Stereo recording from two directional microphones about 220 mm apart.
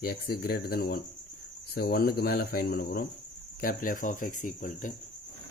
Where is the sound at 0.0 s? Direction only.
45° left (ahead or behind).